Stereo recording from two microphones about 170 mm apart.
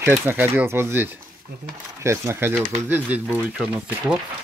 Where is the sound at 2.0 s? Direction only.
15° right (ahead or behind).